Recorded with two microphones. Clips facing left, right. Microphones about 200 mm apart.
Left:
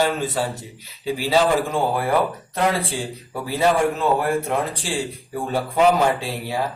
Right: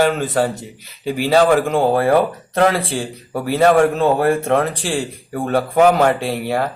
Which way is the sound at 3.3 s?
65° right (ahead or behind).